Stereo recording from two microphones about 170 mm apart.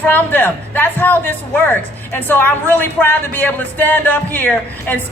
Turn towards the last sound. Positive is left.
turn(degrees=10)  # may be behind; listen again after turning